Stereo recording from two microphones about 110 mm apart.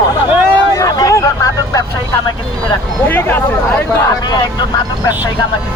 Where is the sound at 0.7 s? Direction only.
35° left (ahead or behind).